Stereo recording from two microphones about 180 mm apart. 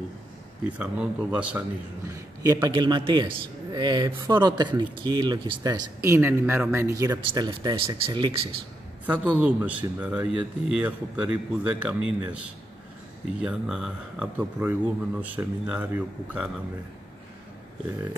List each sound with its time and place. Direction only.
0.7 s speech: 5° right (ahead or behind)
2.1 s a man's voice: 20° right (ahead or behind)
9.0 s speech: 10° right (ahead or behind)
13.4 s speech: 5° right (ahead or behind)